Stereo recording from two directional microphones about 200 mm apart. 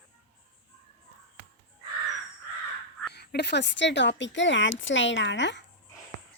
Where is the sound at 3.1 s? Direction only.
55° left (ahead or behind).